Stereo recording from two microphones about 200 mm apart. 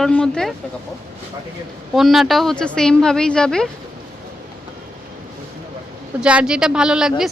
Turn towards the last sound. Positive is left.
turn(degrees=0)  # may be behind; listen again after turning